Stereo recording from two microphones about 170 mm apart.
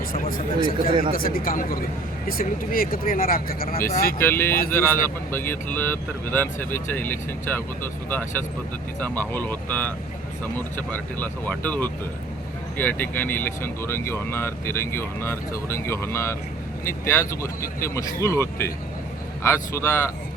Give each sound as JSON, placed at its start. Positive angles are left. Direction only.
{"t": 0.1, "sound": "speech", "side_deg": 55}
{"t": 4.2, "sound": "speech", "side_deg": 15}
{"t": 9.0, "sound": "speech", "side_deg": 10}